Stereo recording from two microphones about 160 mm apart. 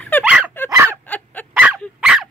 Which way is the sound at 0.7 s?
20° right (ahead or behind).